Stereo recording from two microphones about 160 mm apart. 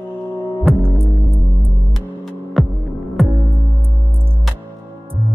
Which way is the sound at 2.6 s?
Centre (ahead or behind).